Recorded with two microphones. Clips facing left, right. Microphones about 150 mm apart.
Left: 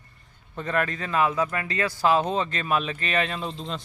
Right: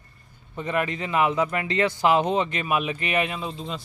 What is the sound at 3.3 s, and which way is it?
Speech, 5° right (ahead or behind).